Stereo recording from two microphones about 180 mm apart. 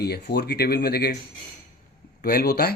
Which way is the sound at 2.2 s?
55° left (ahead or behind).